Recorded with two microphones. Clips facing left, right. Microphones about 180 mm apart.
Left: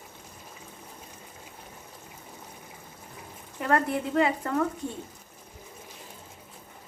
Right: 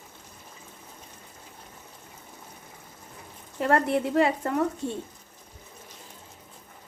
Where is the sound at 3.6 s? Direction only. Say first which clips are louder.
Right 3 dB; 25° right (ahead or behind).